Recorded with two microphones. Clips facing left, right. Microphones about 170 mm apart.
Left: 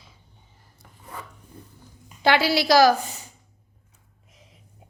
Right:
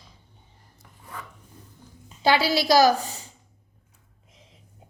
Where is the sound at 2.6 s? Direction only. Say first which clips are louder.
Left 2 dB; 40° right (ahead or behind).